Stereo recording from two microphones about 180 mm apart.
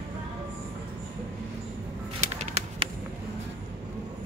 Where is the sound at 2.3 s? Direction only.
40° right (ahead or behind).